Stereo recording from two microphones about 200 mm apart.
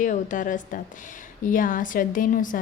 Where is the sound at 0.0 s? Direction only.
40° left (ahead or behind).